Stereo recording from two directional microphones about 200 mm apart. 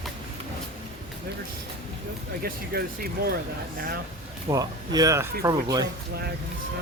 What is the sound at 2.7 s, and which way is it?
Speech, 50° right (ahead or behind).